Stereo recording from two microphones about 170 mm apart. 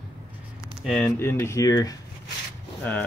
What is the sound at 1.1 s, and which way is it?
Speech, 15° left (ahead or behind).